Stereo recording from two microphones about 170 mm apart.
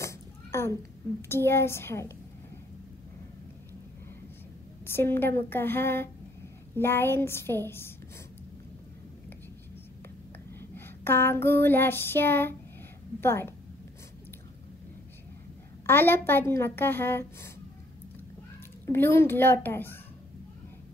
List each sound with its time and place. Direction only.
0.0 s a sound: 15° left (ahead or behind)
1.3 s a woman's voice: 15° left (ahead or behind)
4.8 s a woman's voice: 15° left (ahead or behind)
10.6 s child singing: 15° left (ahead or behind)
13.2 s a woman's voice: 15° left (ahead or behind)
15.9 s a woman's voice: 10° left (ahead or behind)
18.9 s a woman's voice: 15° left (ahead or behind)